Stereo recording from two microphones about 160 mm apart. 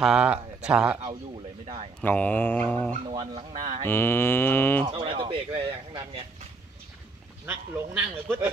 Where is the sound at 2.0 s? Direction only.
10° left (ahead or behind).